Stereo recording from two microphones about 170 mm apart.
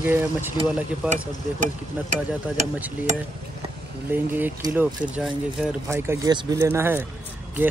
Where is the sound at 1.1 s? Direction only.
45° right (ahead or behind).